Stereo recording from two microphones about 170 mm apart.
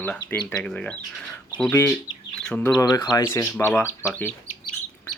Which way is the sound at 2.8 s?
20° left (ahead or behind).